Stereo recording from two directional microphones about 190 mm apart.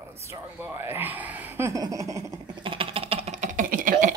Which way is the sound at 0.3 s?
15° right (ahead or behind).